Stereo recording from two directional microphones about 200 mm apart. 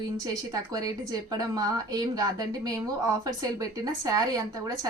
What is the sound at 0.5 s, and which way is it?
A woman's voice, 15° right (ahead or behind).